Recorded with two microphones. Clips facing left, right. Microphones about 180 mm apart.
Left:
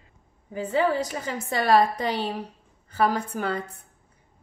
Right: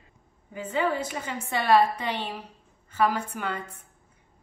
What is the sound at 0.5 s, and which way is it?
A woman's voice, 35° left (ahead or behind).